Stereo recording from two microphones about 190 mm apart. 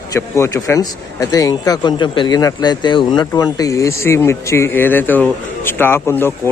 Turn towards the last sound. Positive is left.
turn(degrees=10)  # may be behind; listen again after turning